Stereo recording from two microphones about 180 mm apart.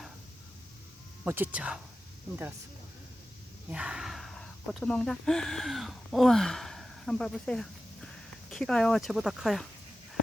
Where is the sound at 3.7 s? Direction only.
5° right (ahead or behind).